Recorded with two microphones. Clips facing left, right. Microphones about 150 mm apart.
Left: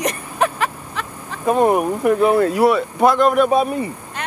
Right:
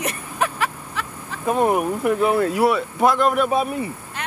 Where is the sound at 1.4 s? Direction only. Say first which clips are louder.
Left 3 dB; 35° left (ahead or behind).